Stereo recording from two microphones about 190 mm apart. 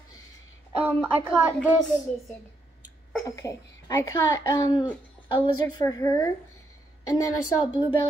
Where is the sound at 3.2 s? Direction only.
15° left (ahead or behind).